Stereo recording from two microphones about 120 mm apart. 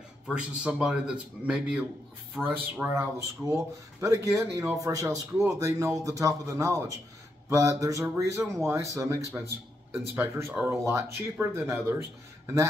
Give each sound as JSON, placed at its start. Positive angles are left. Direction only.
{"t": 0.3, "sound": "a man's voice", "side_deg": -5}
{"t": 2.4, "sound": "a man's voice", "side_deg": -20}
{"t": 10.9, "sound": "speech", "side_deg": -20}